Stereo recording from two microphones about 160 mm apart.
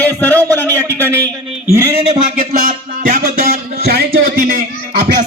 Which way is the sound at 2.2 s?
45° right (ahead or behind).